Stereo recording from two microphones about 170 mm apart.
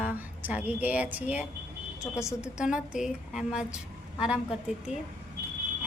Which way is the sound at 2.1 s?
15° left (ahead or behind).